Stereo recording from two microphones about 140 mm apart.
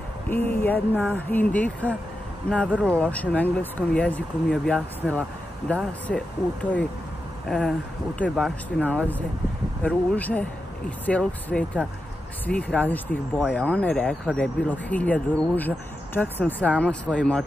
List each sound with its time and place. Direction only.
0.3 s speech: 15° left (ahead or behind)
9.8 s speech: 10° left (ahead or behind)